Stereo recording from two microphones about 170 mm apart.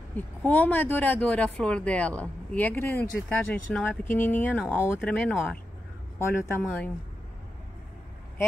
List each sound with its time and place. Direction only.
0.4 s speech: 10° left (ahead or behind)